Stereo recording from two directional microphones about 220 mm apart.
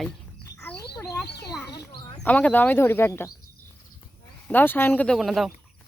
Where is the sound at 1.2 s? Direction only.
50° left (ahead or behind).